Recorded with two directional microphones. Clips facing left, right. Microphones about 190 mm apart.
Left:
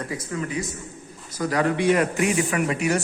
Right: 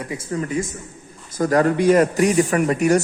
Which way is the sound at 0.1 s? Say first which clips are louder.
Right 4 dB; 30° right (ahead or behind).